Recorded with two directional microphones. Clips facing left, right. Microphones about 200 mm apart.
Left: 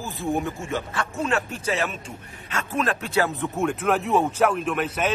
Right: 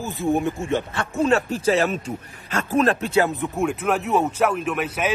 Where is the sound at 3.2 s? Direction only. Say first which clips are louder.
Right 2 dB; 15° right (ahead or behind).